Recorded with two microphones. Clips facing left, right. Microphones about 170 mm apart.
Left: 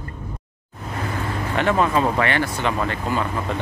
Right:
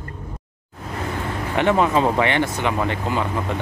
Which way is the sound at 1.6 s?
20° right (ahead or behind).